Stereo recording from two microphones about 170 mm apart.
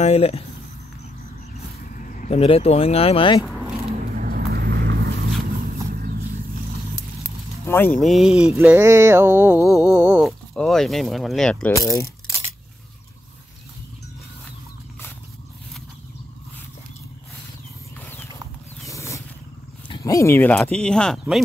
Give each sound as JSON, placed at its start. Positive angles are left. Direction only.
{"t": 0.0, "sound": "speech", "side_deg": 35}
{"t": 2.0, "sound": "speech", "side_deg": 50}
{"t": 3.9, "sound": "vehicle", "side_deg": -55}
{"t": 7.6, "sound": "speech", "side_deg": 15}
{"t": 8.0, "sound": "a sound", "side_deg": 0}
{"t": 9.7, "sound": "speech", "side_deg": -5}
{"t": 11.7, "sound": "speech", "side_deg": 20}
{"t": 18.9, "sound": "a sound", "side_deg": 15}
{"t": 19.9, "sound": "speech", "side_deg": 20}